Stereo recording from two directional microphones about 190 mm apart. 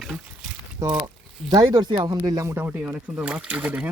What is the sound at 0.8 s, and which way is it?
Speech, 20° right (ahead or behind).